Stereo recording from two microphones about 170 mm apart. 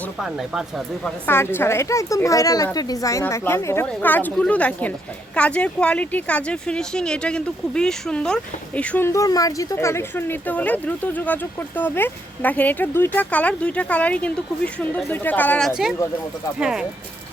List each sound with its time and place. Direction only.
1.0 s speech: 15° left (ahead or behind); by 16.8 s 5° right (ahead or behind)